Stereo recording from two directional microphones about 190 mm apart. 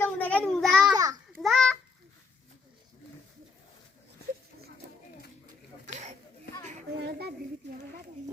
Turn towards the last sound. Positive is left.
turn(degrees=-55)  # may be behind; listen again after turning